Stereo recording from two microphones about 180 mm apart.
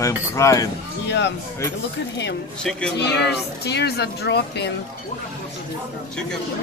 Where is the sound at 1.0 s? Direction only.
80° left.